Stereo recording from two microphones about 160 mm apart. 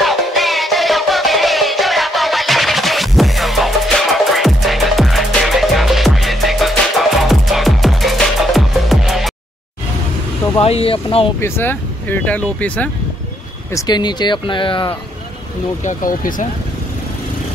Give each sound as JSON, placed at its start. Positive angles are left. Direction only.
{"t": 0.0, "sound": "music", "side_deg": 0}
{"t": 10.6, "sound": "speech", "side_deg": 40}
{"t": 11.3, "sound": "speech", "side_deg": 15}
{"t": 13.7, "sound": "speech", "side_deg": 25}
{"t": 15.8, "sound": "speech", "side_deg": 55}